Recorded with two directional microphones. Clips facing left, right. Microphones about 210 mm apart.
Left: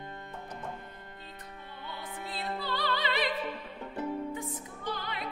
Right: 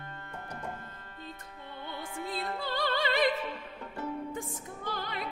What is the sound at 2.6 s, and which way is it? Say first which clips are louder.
Opera: right 2 dB; 45° right (ahead or behind).